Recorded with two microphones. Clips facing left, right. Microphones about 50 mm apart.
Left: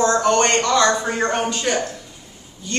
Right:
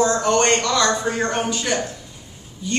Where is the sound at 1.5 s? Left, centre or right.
Centre.